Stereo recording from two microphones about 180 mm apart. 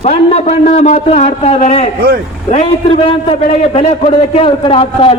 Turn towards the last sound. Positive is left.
turn(degrees=30)  # may be behind; listen again after turning